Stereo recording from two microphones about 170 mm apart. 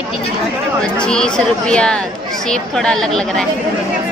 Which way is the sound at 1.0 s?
5° left (ahead or behind).